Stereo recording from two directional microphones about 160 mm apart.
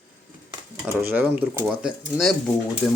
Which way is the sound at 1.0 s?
10° right (ahead or behind).